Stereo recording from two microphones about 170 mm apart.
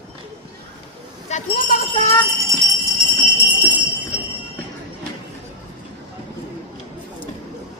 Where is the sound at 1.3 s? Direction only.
50° left (ahead or behind).